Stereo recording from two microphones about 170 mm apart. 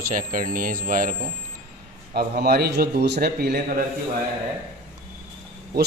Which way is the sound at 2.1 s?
70° right (ahead or behind).